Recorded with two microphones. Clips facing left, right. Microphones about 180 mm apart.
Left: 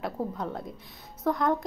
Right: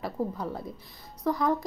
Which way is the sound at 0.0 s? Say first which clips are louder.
Even; centre (ahead or behind).